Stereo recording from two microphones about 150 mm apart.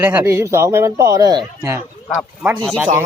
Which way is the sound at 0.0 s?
10° right (ahead or behind).